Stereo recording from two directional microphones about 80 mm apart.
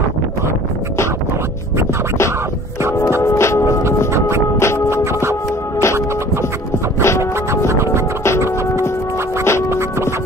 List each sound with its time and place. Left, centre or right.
3.2 s music: left
4.8 s music: right
7.0 s music: left
7.6 s music: right
9.4 s music: left
9.7 s music: right